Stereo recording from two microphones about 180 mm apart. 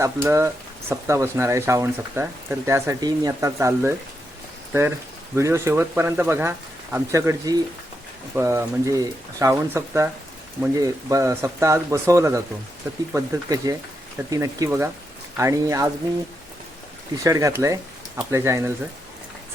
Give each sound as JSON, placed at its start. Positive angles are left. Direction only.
{"t": 0.0, "sound": "speech", "side_deg": -15}
{"t": 17.2, "sound": "speech", "side_deg": -20}